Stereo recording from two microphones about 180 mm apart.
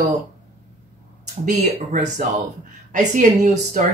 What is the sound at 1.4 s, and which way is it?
Speech, 45° right (ahead or behind).